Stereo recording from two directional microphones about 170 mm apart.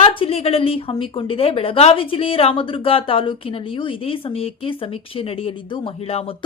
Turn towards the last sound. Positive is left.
turn(degrees=35)  # may be behind; listen again after turning